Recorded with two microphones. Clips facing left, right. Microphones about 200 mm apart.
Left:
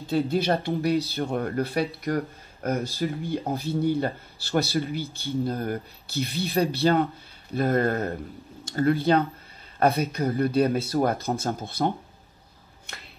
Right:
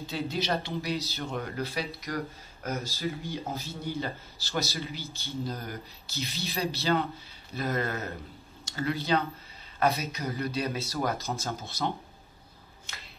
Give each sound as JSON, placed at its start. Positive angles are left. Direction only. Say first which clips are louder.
{"t": 0.0, "sound": "speech", "louder": "left 8 dB", "side_deg": 55}